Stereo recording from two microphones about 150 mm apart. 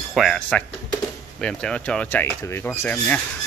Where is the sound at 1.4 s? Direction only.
5° left (ahead or behind).